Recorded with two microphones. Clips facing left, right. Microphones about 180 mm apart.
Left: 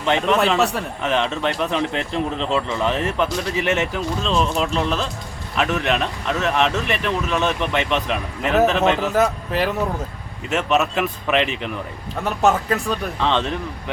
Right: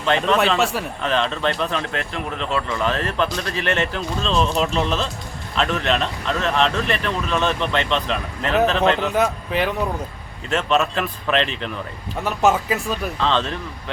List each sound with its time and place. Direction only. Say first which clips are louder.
0.0 s speech: even; 15° left (ahead or behind)
0.3 s speech: left 1 dB; centre (ahead or behind)
1.0 s speech: even; 15° left (ahead or behind)
10.5 s speech: even; 15° left (ahead or behind)
12.2 s speech: even; centre (ahead or behind)
13.1 s speech: even; 15° left (ahead or behind)